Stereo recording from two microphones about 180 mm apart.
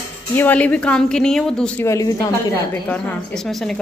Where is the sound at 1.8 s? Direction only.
15° left (ahead or behind).